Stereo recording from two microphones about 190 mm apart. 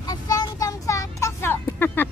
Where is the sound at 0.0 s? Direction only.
20° left (ahead or behind).